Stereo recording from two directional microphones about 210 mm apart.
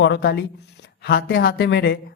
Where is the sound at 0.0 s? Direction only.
50° left (ahead or behind).